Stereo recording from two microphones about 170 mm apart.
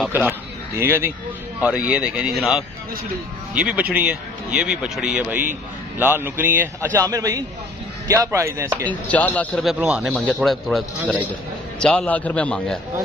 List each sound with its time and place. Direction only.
0.1 s a man's voice: 10° right (ahead or behind)
8.8 s a man's voice: 10° left (ahead or behind)
9.6 s a man's voice: 5° right (ahead or behind)